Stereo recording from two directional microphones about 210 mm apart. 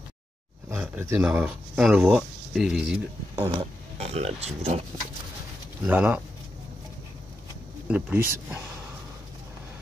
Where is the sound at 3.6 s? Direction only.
30° right (ahead or behind).